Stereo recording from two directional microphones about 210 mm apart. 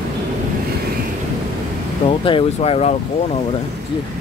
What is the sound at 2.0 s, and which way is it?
Speech, 25° left (ahead or behind).